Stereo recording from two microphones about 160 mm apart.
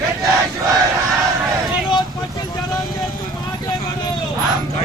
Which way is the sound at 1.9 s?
25° left (ahead or behind).